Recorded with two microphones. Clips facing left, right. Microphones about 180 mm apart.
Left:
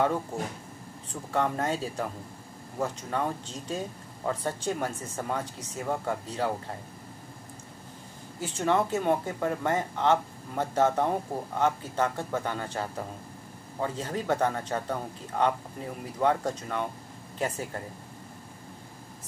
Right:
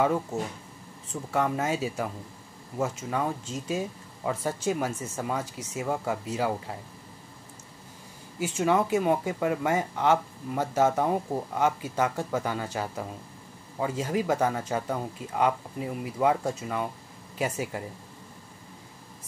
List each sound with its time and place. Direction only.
1.3 s speech: 5° right (ahead or behind)
8.4 s speech: 10° right (ahead or behind)